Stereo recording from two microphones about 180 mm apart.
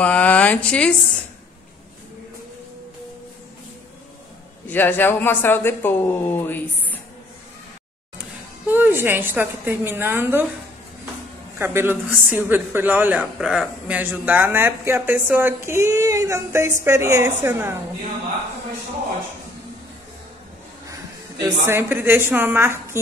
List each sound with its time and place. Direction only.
0.0 s speech: 10° left (ahead or behind)
4.6 s speech: 10° left (ahead or behind)
8.6 s speech: 10° right (ahead or behind)
11.5 s speech: 10° right (ahead or behind)
20.8 s a woman's voice: 20° right (ahead or behind)